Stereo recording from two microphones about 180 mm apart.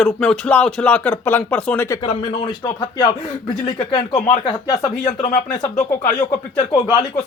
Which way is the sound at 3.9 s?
25° left (ahead or behind).